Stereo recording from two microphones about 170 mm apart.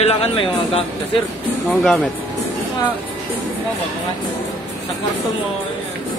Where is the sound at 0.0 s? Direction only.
35° left (ahead or behind).